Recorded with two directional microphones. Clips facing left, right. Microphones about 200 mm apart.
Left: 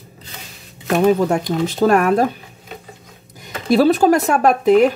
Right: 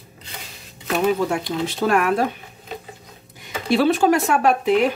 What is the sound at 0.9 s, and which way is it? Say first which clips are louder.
Speech: left 5 dB; 45° left (ahead or behind).